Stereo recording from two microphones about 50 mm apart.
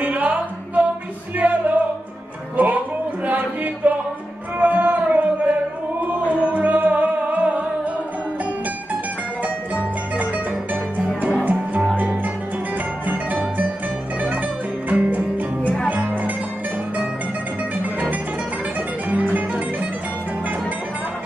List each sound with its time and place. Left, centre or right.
0.0 s music: right
1.4 s a sound: right
2.5 s music: right
3.3 s a sound: right
4.6 s music: right
9.4 s music: right
13.0 s music: right
14.9 s music: right
19.0 s music: right